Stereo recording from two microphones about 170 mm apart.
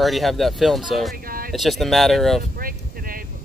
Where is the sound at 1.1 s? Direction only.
55° right (ahead or behind).